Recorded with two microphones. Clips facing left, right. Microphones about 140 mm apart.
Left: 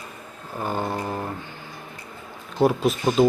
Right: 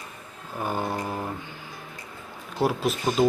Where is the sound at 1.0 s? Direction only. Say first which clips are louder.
Left 2 dB; 5° left (ahead or behind).